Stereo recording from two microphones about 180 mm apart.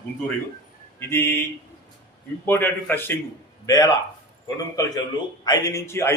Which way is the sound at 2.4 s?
10° left (ahead or behind).